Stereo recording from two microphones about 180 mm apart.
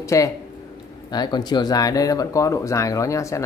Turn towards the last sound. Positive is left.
turn(degrees=15)  # may be behind; listen again after turning